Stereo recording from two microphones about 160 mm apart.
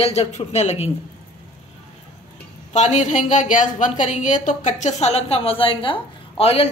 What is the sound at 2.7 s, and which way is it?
A woman's voice, 50° left (ahead or behind).